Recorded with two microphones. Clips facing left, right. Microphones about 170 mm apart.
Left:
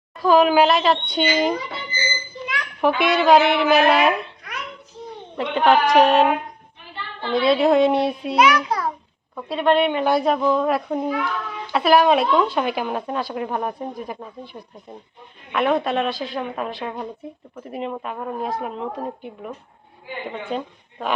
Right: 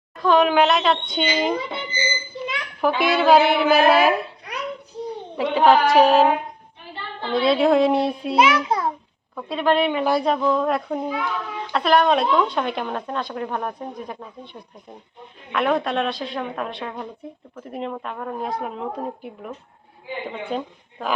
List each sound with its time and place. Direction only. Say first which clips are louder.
0.2 s speech: left 2 dB; 5° left (ahead or behind)
1.5 s speech: right 2 dB; 25° right (ahead or behind)
3.0 s speech: even; centre (ahead or behind)
5.4 s speech: right 1 dB; centre (ahead or behind)
8.4 s a child's voice: even; 25° right (ahead or behind)
9.3 s speech: left 2 dB; centre (ahead or behind)
11.1 s a child's voice: left 2 dB; 15° right (ahead or behind)
11.7 s speech: left 2 dB; 5° left (ahead or behind)